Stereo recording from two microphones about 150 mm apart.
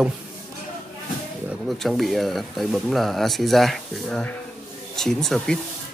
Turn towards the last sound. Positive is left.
turn(degrees=0)  # may be behind; listen again after turning